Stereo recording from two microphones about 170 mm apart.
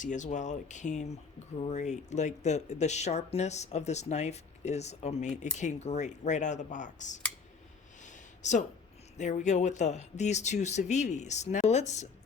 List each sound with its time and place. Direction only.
0.0 s speech: 45° left (ahead or behind)
8.0 s a sound: 45° left (ahead or behind)
9.1 s speech: 45° left (ahead or behind)